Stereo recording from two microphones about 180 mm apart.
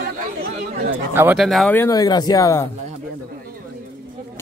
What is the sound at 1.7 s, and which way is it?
Speech, 15° left (ahead or behind).